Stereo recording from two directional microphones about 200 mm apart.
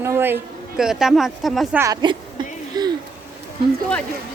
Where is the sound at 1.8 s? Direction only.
20° right (ahead or behind).